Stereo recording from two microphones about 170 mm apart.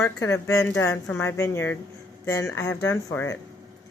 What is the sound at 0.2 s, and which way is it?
Speech, 15° left (ahead or behind).